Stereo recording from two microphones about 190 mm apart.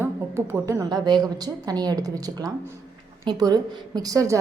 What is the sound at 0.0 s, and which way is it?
A woman's voice, 10° right (ahead or behind).